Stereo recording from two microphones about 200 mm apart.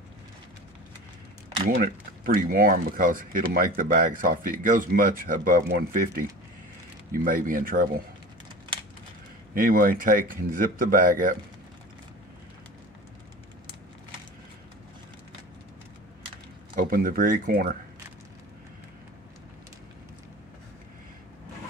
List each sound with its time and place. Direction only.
1.7 s speech: 45° right (ahead or behind)
9.5 s speech: 45° right (ahead or behind)
16.7 s speech: 45° right (ahead or behind)